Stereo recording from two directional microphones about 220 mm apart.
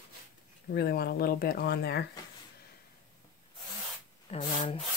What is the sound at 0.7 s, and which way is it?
Speech, 45° left (ahead or behind).